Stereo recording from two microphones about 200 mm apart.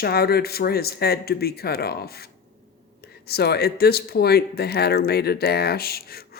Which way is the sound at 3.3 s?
55° left (ahead or behind).